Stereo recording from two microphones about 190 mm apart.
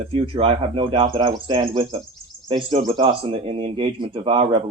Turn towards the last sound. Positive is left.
turn(degrees=-30)  # may be behind; listen again after turning